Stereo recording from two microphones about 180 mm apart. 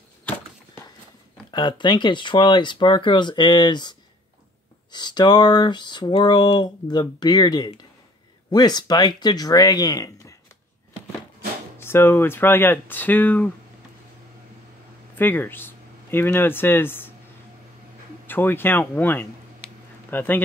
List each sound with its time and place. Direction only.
1.5 s speech: 25° left (ahead or behind)
4.9 s speech: 25° left (ahead or behind)
11.8 s speech: 15° left (ahead or behind)
15.1 s speech: 10° left (ahead or behind)
18.2 s speech: 10° left (ahead or behind)